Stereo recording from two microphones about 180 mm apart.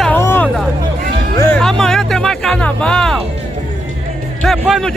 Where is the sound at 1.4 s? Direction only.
5° left (ahead or behind).